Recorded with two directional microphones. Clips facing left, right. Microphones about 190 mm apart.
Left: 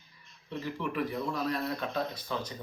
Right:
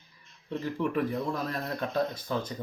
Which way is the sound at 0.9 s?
45° right (ahead or behind).